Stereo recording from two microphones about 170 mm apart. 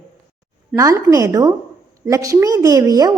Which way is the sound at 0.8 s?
20° right (ahead or behind).